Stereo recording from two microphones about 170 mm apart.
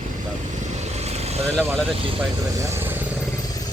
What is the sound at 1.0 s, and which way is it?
Vehicle, 40° right (ahead or behind).